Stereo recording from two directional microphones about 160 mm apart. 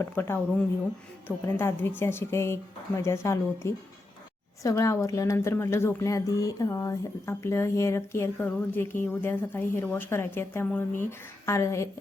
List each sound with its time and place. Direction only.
0.0 s a woman's voice: 15° left (ahead or behind)
1.5 s a woman's voice: 15° left (ahead or behind)